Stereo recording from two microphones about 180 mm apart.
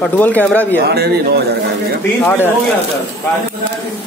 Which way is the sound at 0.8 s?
65° right (ahead or behind).